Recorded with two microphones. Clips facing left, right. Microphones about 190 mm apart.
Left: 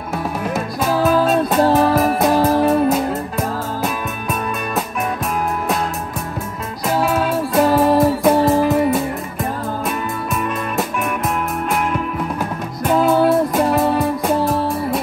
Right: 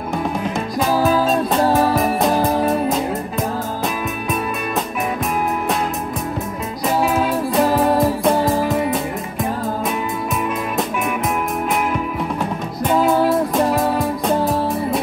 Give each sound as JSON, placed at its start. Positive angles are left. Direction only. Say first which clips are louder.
{"t": 0.7, "sound": "music", "louder": "left 1 dB", "side_deg": 0}
{"t": 7.2, "sound": "music", "louder": "left 1 dB", "side_deg": 0}
{"t": 12.8, "sound": "music", "louder": "left 2 dB", "side_deg": 0}